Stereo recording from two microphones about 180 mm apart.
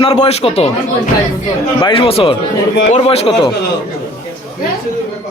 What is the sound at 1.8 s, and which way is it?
Speech, 30° left (ahead or behind).